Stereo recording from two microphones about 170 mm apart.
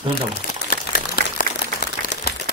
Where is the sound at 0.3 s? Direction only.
55° left (ahead or behind).